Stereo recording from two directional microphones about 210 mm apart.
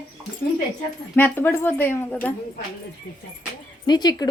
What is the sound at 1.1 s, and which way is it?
Speech, 10° left (ahead or behind).